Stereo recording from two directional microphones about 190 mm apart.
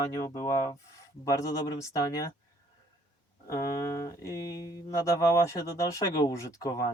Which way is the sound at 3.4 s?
15° left (ahead or behind).